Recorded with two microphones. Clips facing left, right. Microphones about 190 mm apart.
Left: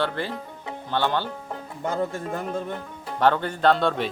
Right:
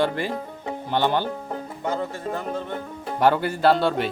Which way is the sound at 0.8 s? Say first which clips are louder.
Right 2 dB; 15° right (ahead or behind).